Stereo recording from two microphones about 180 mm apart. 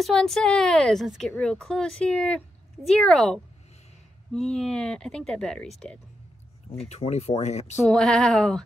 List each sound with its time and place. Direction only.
0.0 s speech: centre (ahead or behind)
6.9 s speech: 35° left (ahead or behind)
7.8 s speech: centre (ahead or behind)